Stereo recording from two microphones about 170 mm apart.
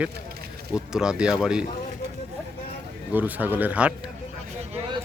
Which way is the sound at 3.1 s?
10° right (ahead or behind).